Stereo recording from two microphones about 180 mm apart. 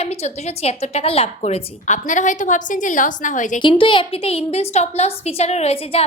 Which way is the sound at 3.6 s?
25° left (ahead or behind).